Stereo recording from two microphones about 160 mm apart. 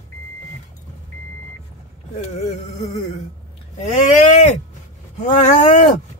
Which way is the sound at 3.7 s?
45° left (ahead or behind).